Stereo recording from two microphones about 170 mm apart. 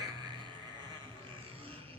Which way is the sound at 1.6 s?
30° right (ahead or behind).